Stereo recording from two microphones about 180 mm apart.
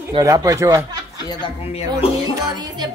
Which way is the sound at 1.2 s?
30° left (ahead or behind).